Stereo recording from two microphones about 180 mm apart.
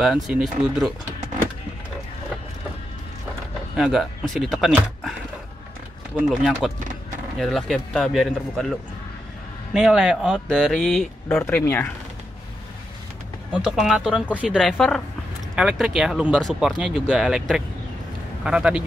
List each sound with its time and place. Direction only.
0.0 s speech: centre (ahead or behind)
3.7 s speech: centre (ahead or behind)
6.2 s speech: 5° right (ahead or behind)
6.8 s vehicle: 45° right (ahead or behind)
7.3 s speech: centre (ahead or behind)
9.8 s speech: 5° right (ahead or behind)
13.5 s speech: 5° right (ahead or behind)